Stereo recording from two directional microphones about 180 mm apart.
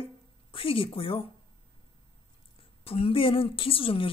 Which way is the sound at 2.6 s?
30° left (ahead or behind).